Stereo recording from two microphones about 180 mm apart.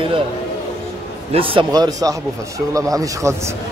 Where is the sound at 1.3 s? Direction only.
30° right (ahead or behind).